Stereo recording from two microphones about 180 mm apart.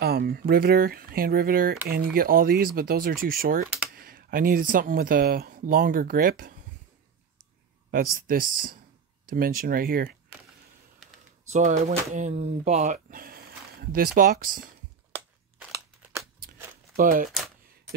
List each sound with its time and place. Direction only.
0.0 s speech: 60° right (ahead or behind)
7.9 s speech: 50° right (ahead or behind)
11.5 s speech: 40° right (ahead or behind)
15.1 s crushing: 10° right (ahead or behind)
16.9 s speech: 50° right (ahead or behind)